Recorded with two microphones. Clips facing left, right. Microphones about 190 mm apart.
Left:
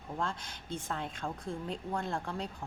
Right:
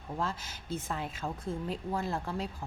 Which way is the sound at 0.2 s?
5° right (ahead or behind).